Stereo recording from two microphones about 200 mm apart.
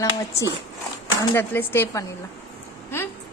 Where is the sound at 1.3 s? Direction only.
10° left (ahead or behind).